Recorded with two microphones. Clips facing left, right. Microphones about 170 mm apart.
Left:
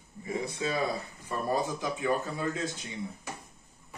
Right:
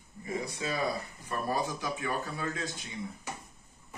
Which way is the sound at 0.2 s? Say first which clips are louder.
Left 2 dB; 20° left (ahead or behind).